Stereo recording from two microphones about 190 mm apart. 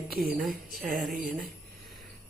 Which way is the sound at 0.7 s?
50° right (ahead or behind).